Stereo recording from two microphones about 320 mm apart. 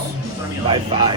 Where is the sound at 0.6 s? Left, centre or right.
Centre.